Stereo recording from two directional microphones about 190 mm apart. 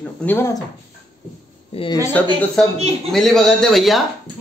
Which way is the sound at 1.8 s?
30° left (ahead or behind).